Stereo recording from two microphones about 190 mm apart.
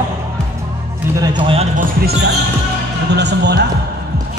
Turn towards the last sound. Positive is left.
turn(degrees=-60)  # may be behind; listen again after turning